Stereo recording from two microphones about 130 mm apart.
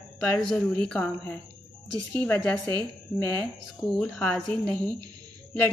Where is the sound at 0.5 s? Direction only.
5° left (ahead or behind).